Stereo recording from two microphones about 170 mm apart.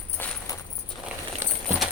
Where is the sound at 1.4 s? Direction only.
15° right (ahead or behind).